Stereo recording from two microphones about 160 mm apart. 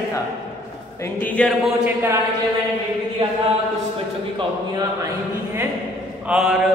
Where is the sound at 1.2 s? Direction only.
10° left (ahead or behind).